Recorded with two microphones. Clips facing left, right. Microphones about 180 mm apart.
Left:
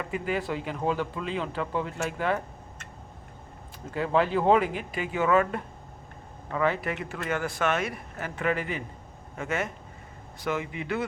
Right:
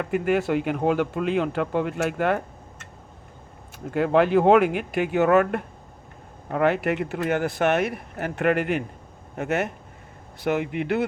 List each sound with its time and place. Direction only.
0.0 s speech: 70° right (ahead or behind)
3.9 s speech: 65° right (ahead or behind)